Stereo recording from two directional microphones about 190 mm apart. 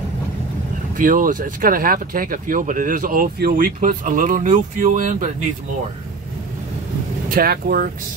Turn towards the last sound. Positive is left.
turn(degrees=-50)  # may be behind; listen again after turning